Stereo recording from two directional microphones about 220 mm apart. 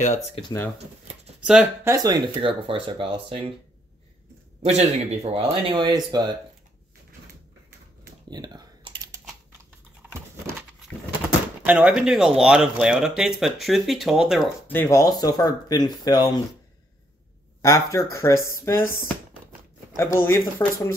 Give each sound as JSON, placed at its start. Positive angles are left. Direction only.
{"t": 0.4, "sound": "speech", "side_deg": 20}
{"t": 1.4, "sound": "speech", "side_deg": -5}
{"t": 2.0, "sound": "speech", "side_deg": -20}
{"t": 4.6, "sound": "speech", "side_deg": -30}
{"t": 8.3, "sound": "typing", "side_deg": -20}
{"t": 11.6, "sound": "speech", "side_deg": -5}
{"t": 14.8, "sound": "speech", "side_deg": 15}
{"t": 17.6, "sound": "speech", "side_deg": 15}
{"t": 20.0, "sound": "speech", "side_deg": 10}